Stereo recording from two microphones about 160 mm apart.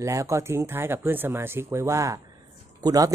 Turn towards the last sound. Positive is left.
turn(degrees=-20)  # may be behind; listen again after turning